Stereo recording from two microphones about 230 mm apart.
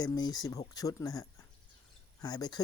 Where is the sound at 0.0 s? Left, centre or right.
Centre.